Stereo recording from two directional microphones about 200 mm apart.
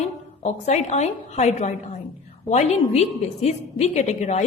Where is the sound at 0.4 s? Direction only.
35° left (ahead or behind).